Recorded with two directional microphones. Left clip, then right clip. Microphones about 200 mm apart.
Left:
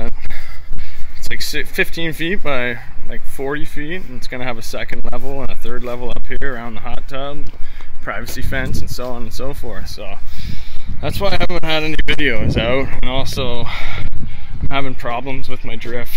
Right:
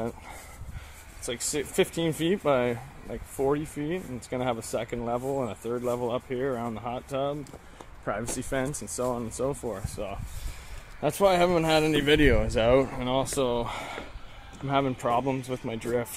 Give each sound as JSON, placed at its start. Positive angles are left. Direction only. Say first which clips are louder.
{"t": 1.2, "sound": "speech", "louder": "left 8 dB", "side_deg": -5}
{"t": 9.0, "sound": "speech", "louder": "left 2 dB", "side_deg": 5}
{"t": 15.3, "sound": "speech", "louder": "left 3 dB", "side_deg": -15}